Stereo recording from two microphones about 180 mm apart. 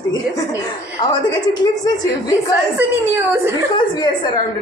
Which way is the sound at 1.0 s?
25° left (ahead or behind).